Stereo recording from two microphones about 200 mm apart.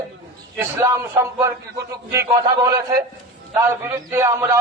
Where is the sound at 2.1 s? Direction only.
15° right (ahead or behind).